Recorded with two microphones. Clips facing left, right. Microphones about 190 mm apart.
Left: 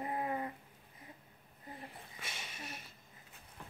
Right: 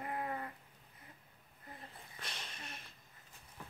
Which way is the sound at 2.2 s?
5° left (ahead or behind).